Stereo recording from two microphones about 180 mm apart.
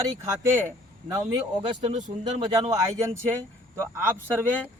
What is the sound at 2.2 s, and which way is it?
A man's voice, 25° right (ahead or behind).